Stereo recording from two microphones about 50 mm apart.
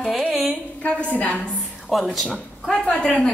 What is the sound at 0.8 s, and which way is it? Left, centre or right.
Speech, left.